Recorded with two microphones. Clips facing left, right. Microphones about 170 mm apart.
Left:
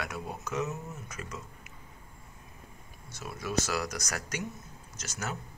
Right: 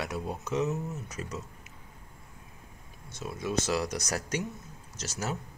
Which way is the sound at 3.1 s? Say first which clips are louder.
Right 1 dB; 25° right (ahead or behind).